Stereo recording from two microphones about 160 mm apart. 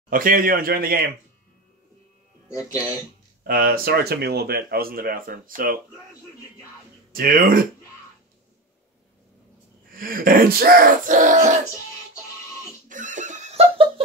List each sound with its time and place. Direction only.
0.1 s speech: 60° right (ahead or behind)
2.4 s speech: 20° left (ahead or behind)
3.4 s speech: 65° right (ahead or behind)
7.1 s speech: 65° right (ahead or behind)
9.9 s speech: 60° right (ahead or behind)
12.8 s a sound: 55° right (ahead or behind)